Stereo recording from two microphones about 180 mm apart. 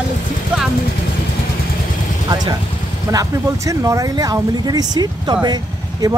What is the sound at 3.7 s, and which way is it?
Speech, 20° right (ahead or behind).